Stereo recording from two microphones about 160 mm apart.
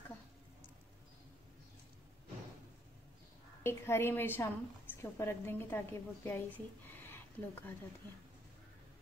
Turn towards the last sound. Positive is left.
turn(degrees=15)  # may be behind; listen again after turning